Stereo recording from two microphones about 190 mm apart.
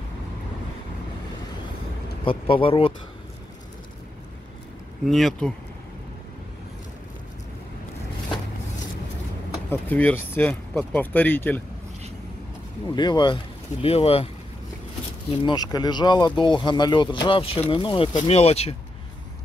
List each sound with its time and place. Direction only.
2.2 s speech: 30° left (ahead or behind)
5.0 s speech: centre (ahead or behind)
9.7 s speech: 10° left (ahead or behind)
12.8 s speech: 25° left (ahead or behind)
15.4 s speech: 20° left (ahead or behind)